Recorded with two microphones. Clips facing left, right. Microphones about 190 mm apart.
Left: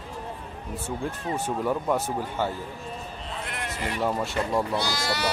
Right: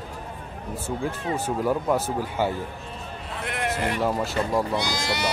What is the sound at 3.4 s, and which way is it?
Bleat, 60° right (ahead or behind).